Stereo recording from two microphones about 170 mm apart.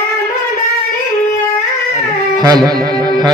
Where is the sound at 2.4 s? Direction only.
25° right (ahead or behind).